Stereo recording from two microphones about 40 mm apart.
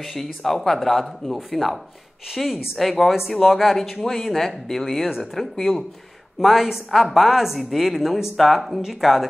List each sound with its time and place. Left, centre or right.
0.0 s a woman's voice: centre